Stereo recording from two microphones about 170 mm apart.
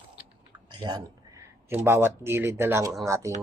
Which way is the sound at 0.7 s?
25° right (ahead or behind).